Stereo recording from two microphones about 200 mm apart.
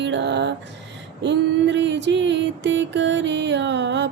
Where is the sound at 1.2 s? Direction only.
60° right (ahead or behind).